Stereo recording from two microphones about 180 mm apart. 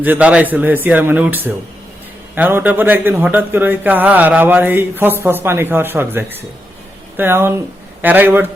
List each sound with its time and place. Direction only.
0.0 s a man's voice: 10° right (ahead or behind)